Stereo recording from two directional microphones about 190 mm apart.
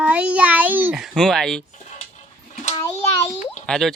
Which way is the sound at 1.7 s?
40° left (ahead or behind).